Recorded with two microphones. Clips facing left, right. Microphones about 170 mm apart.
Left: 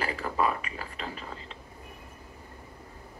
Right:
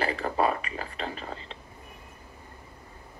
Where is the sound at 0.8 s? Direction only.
60° right (ahead or behind).